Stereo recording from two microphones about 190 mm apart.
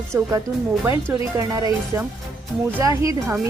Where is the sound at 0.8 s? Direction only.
15° right (ahead or behind).